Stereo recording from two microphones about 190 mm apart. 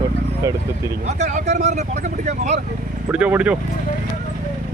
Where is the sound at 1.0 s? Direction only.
35° right (ahead or behind).